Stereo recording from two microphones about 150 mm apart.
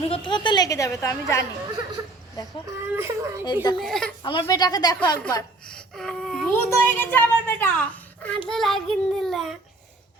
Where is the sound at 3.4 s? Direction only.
30° left (ahead or behind).